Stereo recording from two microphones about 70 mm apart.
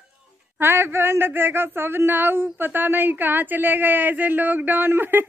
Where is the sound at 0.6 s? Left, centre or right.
Right.